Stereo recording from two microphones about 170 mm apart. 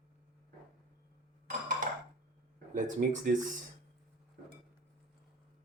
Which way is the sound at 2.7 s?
50° right (ahead or behind).